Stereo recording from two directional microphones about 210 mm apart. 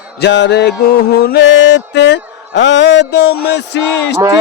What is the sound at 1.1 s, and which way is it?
Mantra, 50° left (ahead or behind).